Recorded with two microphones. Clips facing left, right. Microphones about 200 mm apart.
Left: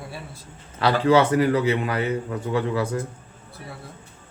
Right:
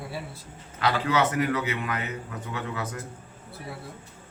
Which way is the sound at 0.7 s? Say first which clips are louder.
Left 7 dB; 35° left (ahead or behind).